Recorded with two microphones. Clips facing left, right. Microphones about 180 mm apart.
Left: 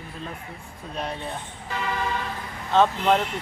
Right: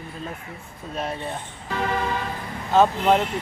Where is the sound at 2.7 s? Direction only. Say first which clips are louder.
Right 2 dB; 10° right (ahead or behind).